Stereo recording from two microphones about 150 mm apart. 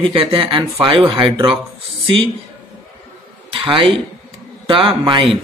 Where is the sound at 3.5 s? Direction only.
35° right (ahead or behind).